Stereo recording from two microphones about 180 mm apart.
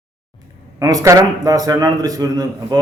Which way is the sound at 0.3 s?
20° right (ahead or behind).